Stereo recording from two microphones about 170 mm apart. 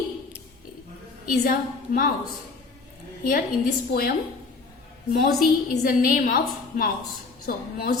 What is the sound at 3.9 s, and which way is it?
Speech, 60° left (ahead or behind).